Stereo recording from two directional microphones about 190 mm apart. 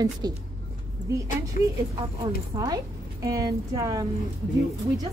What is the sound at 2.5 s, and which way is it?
A woman's voice, 20° right (ahead or behind).